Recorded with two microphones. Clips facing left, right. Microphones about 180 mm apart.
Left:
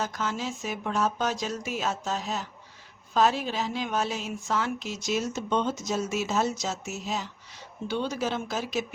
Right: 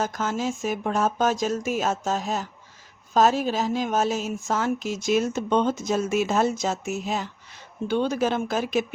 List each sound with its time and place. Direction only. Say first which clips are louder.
0.0 s speech: right 5 dB; 50° right (ahead or behind)